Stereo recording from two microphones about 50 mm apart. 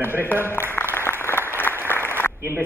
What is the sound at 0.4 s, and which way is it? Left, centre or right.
Speech, left.